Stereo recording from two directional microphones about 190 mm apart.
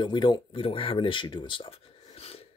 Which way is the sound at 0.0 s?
25° left (ahead or behind).